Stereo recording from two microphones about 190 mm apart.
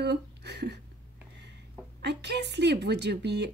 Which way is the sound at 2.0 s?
65° right (ahead or behind).